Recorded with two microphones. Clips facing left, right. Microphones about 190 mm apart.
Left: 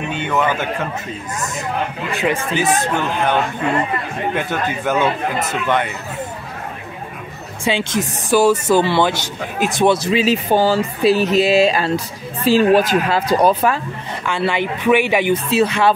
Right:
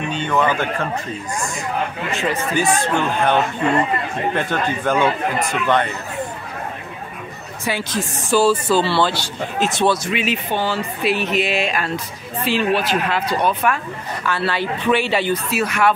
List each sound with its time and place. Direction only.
0.2 s speech: 10° left (ahead or behind)
2.1 s speech: 20° left (ahead or behind)
4.4 s speech: 10° left (ahead or behind)
5.4 s speech: 20° left (ahead or behind)
7.6 s speech: 25° left (ahead or behind)
10.0 s speech: 35° left (ahead or behind)
14.2 s speech: 20° left (ahead or behind)
15.5 s speech: 25° left (ahead or behind)